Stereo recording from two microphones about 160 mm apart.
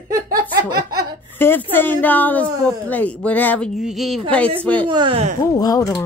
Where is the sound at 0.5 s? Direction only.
25° right (ahead or behind).